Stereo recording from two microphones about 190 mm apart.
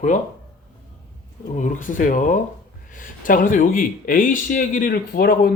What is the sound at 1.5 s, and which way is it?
A man's voice, 45° left (ahead or behind).